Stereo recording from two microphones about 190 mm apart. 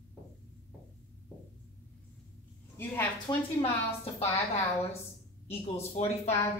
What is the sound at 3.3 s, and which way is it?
Speech, 20° left (ahead or behind).